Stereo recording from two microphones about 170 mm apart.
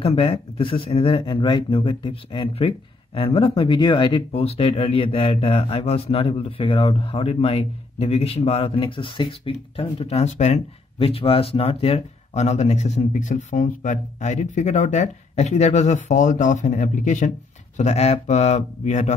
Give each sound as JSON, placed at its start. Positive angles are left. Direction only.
{"t": 0.0, "sound": "speech", "side_deg": 35}